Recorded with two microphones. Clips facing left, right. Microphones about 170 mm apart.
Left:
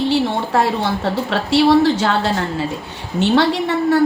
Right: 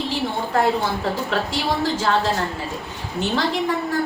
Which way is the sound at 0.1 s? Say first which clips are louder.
Left 6 dB; 80° left.